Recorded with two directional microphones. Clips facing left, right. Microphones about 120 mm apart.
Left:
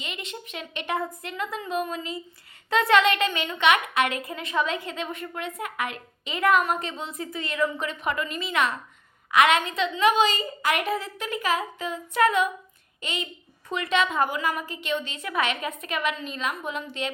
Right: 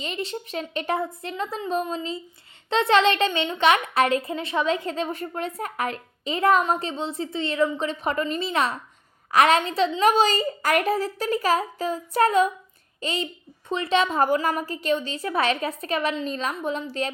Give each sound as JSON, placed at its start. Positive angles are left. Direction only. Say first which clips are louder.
{"t": 0.0, "sound": "a woman's voice", "louder": "right 7 dB", "side_deg": -35}